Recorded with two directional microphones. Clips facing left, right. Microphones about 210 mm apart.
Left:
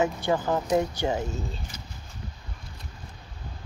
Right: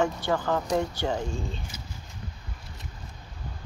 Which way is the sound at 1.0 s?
5° left (ahead or behind).